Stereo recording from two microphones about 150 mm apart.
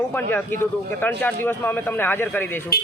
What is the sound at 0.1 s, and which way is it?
Speech, 15° left (ahead or behind).